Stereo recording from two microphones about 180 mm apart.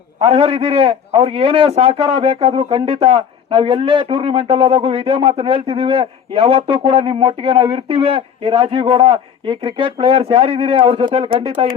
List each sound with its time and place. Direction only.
0.2 s a man's voice: 30° right (ahead or behind)